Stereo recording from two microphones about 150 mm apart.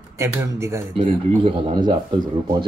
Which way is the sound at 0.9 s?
35° right (ahead or behind).